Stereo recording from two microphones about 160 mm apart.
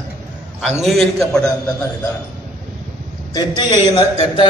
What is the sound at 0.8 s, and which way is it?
Speech, centre (ahead or behind).